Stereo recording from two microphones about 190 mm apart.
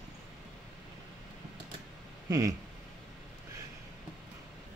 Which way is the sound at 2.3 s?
20° right (ahead or behind).